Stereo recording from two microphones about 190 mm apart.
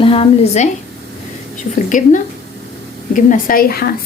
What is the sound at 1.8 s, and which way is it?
A woman's voice, 45° left (ahead or behind).